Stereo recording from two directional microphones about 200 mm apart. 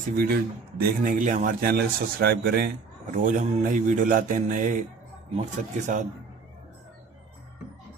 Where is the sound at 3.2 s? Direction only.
40° right (ahead or behind).